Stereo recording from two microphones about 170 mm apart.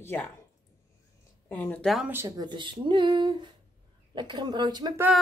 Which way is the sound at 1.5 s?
10° left (ahead or behind).